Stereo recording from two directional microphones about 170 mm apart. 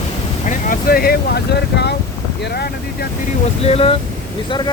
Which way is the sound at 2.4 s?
65° left (ahead or behind).